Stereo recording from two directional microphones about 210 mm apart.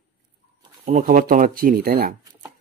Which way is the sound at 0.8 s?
45° right (ahead or behind).